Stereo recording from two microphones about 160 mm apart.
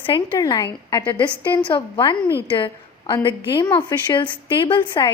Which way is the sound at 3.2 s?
30° left (ahead or behind).